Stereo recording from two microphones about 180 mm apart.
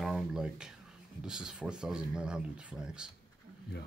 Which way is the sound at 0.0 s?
5° right (ahead or behind).